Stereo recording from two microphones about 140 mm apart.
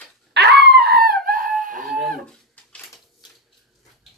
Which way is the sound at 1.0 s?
90° right.